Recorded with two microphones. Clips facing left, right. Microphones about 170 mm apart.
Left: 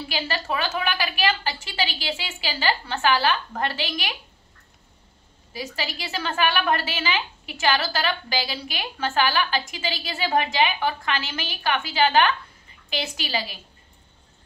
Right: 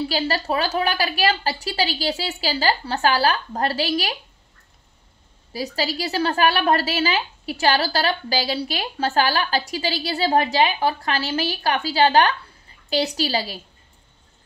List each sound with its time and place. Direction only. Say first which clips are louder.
0.1 s a woman's voice: right 5 dB; 35° right (ahead or behind)
5.5 s a woman's voice: right 6 dB; 35° right (ahead or behind)